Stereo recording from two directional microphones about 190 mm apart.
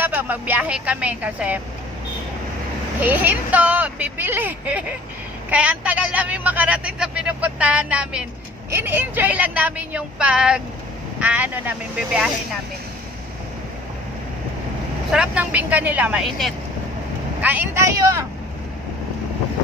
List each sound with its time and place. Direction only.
0.0 s speech: 10° right (ahead or behind)
3.0 s speech: 10° right (ahead or behind)
15.0 s speech: 5° right (ahead or behind)